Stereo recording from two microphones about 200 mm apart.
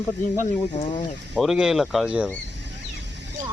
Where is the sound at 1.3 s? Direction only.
Centre (ahead or behind).